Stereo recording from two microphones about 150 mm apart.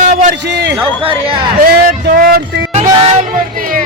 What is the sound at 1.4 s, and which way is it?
Speech, 90° right.